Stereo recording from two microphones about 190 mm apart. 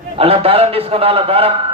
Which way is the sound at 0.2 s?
30° right (ahead or behind).